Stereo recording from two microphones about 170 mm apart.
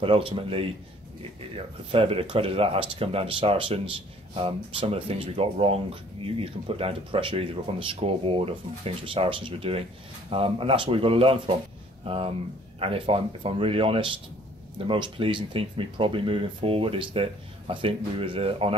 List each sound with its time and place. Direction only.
0.0 s speech: 35° right (ahead or behind)
1.9 s speech: 35° right (ahead or behind)